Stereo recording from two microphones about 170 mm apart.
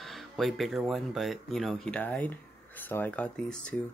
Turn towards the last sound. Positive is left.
turn(degrees=5)  # may be behind; listen again after turning